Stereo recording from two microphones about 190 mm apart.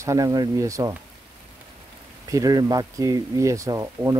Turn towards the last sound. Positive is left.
turn(degrees=-15)  # may be behind; listen again after turning